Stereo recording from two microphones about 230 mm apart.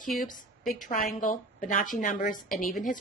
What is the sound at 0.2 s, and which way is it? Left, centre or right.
A woman's voice, left.